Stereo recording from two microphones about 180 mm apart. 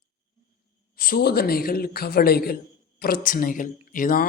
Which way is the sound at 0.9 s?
55° left (ahead or behind).